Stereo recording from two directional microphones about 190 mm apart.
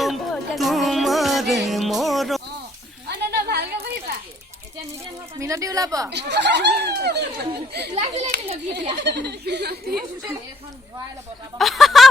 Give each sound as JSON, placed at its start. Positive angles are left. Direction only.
{"t": 0.0, "sound": "music", "side_deg": 0}
{"t": 3.1, "sound": "a sound", "side_deg": -60}
{"t": 5.4, "sound": "a woman's voice", "side_deg": -15}
{"t": 6.1, "sound": "speech", "side_deg": -65}
{"t": 7.9, "sound": "a child's voice", "side_deg": -35}
{"t": 8.7, "sound": "speech", "side_deg": -65}
{"t": 11.5, "sound": "speech", "side_deg": 0}